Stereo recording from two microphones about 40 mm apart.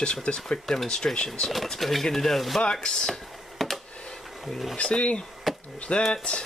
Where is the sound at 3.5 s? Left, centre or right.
Centre.